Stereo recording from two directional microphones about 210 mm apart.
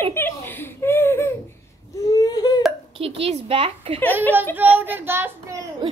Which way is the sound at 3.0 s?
30° right (ahead or behind).